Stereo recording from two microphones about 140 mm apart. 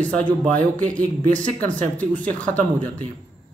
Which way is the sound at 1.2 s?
65° right (ahead or behind).